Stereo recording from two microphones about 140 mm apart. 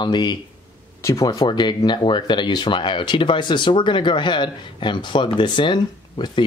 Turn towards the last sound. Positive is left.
turn(degrees=35)  # may be behind; listen again after turning